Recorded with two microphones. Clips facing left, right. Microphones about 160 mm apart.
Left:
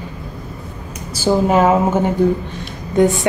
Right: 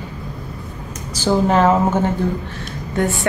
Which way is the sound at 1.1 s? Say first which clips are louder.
Left 2 dB; 10° left (ahead or behind).